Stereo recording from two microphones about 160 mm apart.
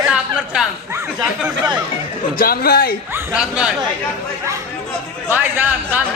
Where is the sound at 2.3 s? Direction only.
65° left (ahead or behind).